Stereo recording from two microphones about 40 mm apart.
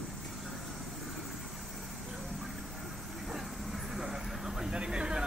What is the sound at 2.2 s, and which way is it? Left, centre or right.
Vehicle, centre.